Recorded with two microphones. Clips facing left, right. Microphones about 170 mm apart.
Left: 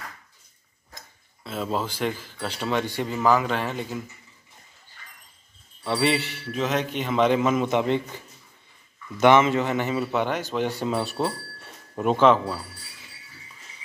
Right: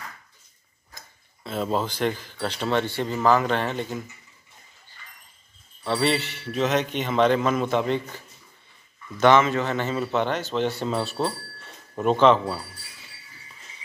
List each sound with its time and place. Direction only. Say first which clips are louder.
0.9 s tick-tock: left 1 dB; centre (ahead or behind)
2.4 s speech: right 2 dB; 5° left (ahead or behind)
5.9 s speech: even; 10° left (ahead or behind)
9.2 s speech: left 1 dB; 20° left (ahead or behind)